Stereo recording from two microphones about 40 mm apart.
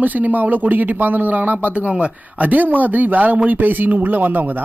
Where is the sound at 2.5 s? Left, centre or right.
Right.